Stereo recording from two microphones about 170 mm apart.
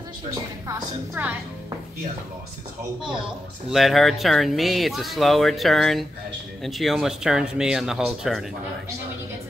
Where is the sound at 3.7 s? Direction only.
Centre (ahead or behind).